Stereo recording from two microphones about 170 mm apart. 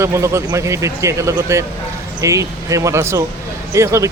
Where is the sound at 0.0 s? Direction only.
15° right (ahead or behind).